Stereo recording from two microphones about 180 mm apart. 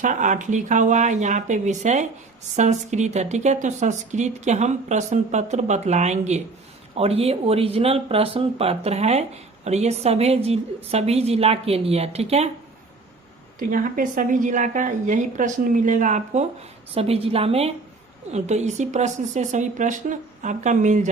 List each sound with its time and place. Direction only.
0.0 s a woman's voice: 45° right (ahead or behind)
13.6 s a woman's voice: 50° right (ahead or behind)